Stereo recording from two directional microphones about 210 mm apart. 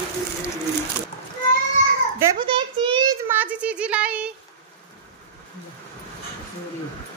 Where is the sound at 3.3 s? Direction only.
10° right (ahead or behind).